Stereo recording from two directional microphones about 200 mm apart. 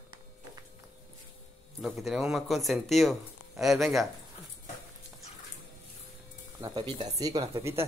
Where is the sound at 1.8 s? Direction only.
Centre (ahead or behind).